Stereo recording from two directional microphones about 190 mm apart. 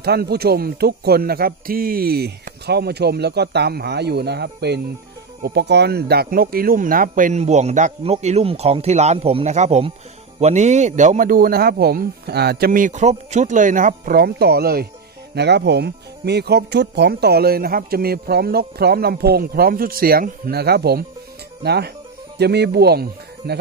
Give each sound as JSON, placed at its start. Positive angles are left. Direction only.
{"t": 0.0, "sound": "speech", "side_deg": -60}